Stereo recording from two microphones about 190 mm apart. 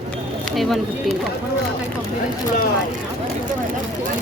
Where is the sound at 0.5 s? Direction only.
Centre (ahead or behind).